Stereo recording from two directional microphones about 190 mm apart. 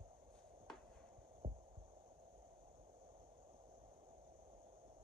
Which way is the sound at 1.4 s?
25° right (ahead or behind).